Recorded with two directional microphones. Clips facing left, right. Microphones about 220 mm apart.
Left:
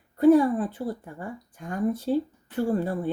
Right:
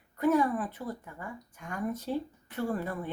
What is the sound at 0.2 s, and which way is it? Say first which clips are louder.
A woman's voice: left 8 dB; 30° left (ahead or behind).